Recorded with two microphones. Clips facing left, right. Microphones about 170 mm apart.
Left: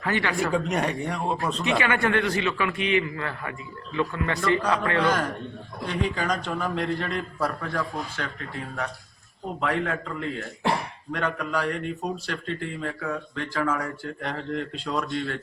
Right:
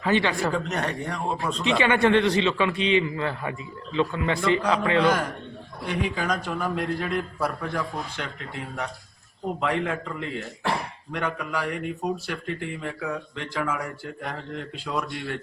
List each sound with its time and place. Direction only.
0.0 s a man's voice: 25° right (ahead or behind)
0.5 s speech: 10° left (ahead or behind)
1.8 s a man's voice: 25° right (ahead or behind); by 15.0 s 5° right (ahead or behind)